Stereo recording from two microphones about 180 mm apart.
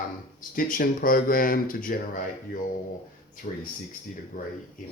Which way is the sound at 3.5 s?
50° left (ahead or behind).